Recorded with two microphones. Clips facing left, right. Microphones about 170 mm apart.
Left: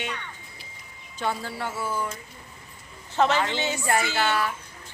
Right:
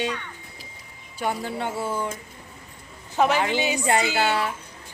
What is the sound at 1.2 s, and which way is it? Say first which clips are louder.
Speech: right 2 dB; 15° right (ahead or behind).